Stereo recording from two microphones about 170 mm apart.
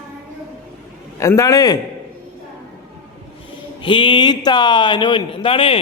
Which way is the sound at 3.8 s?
30° left (ahead or behind).